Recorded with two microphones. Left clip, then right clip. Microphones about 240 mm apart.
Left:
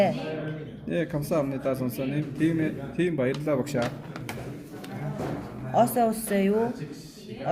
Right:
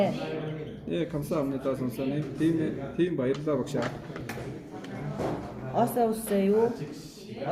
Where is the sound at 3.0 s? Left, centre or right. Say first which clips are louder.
Left 1 dB; left.